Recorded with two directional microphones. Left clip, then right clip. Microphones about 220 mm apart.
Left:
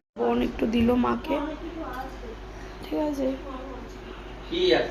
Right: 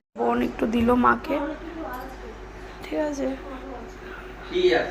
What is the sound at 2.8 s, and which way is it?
Speech, centre (ahead or behind).